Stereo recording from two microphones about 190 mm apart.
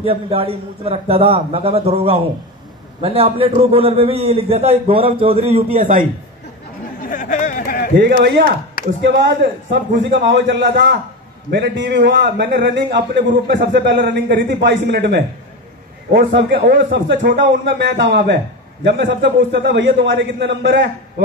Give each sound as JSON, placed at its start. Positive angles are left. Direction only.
{"t": 0.0, "sound": "a man's voice", "side_deg": -30}
{"t": 7.1, "sound": "a sound", "side_deg": 45}
{"t": 9.7, "sound": "a man's voice", "side_deg": -60}